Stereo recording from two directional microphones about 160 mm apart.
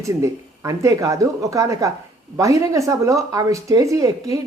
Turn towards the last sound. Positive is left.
turn(degrees=-20)  # may be behind; listen again after turning